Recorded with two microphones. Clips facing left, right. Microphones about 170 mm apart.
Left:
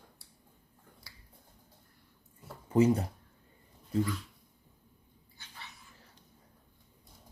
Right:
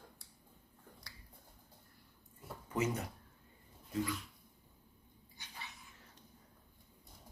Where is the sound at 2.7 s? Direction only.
30° left (ahead or behind).